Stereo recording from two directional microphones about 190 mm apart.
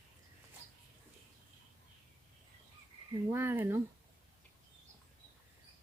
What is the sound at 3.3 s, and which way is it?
Speech, 10° right (ahead or behind).